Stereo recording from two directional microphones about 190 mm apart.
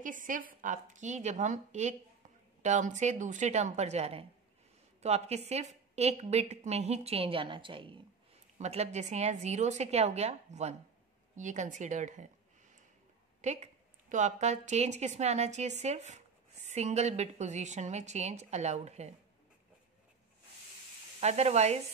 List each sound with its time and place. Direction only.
0.0 s a woman's voice: 45° right (ahead or behind)
13.4 s a woman's voice: 35° right (ahead or behind)
21.2 s a woman's voice: 35° right (ahead or behind)